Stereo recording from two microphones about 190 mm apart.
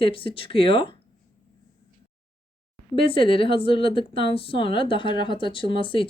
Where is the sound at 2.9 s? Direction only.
30° left (ahead or behind).